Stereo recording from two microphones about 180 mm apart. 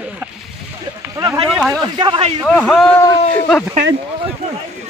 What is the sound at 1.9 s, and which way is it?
Speech, 30° right (ahead or behind).